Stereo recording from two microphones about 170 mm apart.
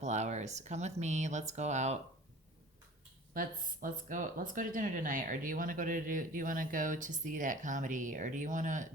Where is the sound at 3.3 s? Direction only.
55° right (ahead or behind).